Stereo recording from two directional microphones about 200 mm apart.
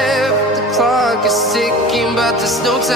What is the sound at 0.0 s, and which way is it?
Music, centre (ahead or behind).